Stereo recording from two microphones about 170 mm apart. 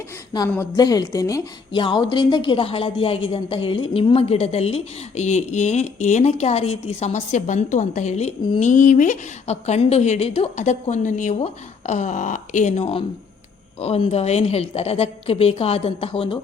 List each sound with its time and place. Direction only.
0.5 s a woman's voice: 20° left (ahead or behind); by 16.4 s 35° left (ahead or behind)